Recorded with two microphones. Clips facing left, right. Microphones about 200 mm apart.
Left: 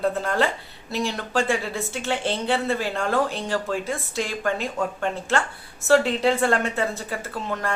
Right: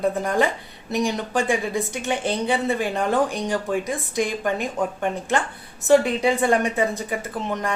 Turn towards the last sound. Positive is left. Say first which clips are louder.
# right 2 dB
turn(degrees=-20)  # may be behind; listen again after turning